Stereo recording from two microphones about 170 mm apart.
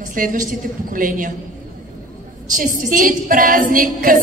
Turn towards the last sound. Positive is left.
turn(degrees=-55)  # may be behind; listen again after turning